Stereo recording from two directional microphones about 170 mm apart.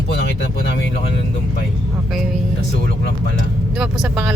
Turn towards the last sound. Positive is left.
turn(degrees=-5)  # may be behind; listen again after turning